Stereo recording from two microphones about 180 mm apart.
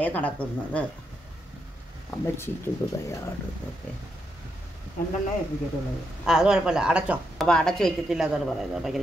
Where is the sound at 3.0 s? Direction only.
15° left (ahead or behind).